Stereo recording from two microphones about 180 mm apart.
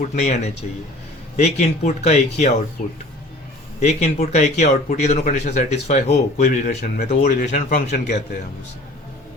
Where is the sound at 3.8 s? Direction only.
40° left (ahead or behind).